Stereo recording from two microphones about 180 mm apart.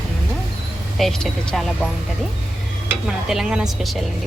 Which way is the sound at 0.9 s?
Centre (ahead or behind).